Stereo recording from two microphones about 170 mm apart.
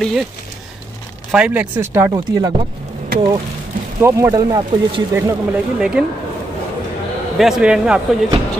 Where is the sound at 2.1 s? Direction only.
25° right (ahead or behind).